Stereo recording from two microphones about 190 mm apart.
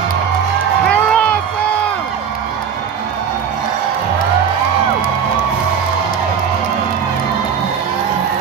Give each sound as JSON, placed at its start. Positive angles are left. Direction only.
{"t": 0.8, "sound": "crowd", "side_deg": 5}